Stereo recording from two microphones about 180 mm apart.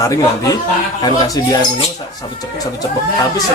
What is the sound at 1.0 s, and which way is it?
Speech, 20° left (ahead or behind).